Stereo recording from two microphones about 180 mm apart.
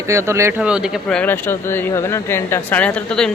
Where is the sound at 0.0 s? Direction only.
15° right (ahead or behind).